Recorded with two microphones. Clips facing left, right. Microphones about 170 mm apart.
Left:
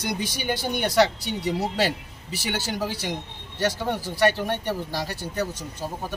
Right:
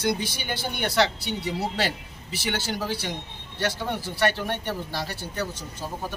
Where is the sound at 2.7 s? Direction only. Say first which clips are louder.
Left 1 dB; 10° left (ahead or behind).